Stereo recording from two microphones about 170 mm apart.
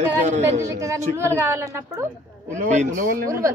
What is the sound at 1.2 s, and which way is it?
Speech, 15° right (ahead or behind).